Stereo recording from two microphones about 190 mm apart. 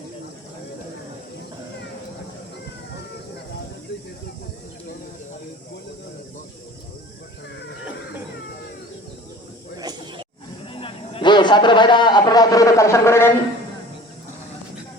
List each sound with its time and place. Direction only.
9.7 s snake: 20° right (ahead or behind)
10.7 s a man's voice: 30° left (ahead or behind); by 13.3 s 15° left (ahead or behind)